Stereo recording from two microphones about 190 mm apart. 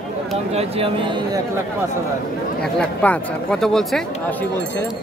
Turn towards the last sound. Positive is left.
turn(degrees=0)  # may be behind; listen again after turning